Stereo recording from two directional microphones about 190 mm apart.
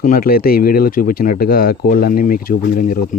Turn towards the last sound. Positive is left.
turn(degrees=50)  # may be behind; listen again after turning